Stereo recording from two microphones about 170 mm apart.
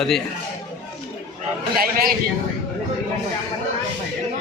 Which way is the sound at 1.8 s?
60° right (ahead or behind).